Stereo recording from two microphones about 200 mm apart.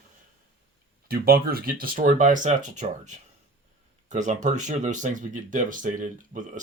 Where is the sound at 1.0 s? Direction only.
50° right (ahead or behind).